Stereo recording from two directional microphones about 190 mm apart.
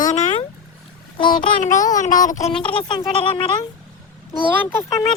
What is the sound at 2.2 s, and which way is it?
Speech, 40° left (ahead or behind).